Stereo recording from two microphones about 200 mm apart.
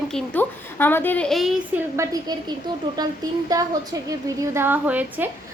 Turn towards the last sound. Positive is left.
turn(degrees=-10)  # may be behind; listen again after turning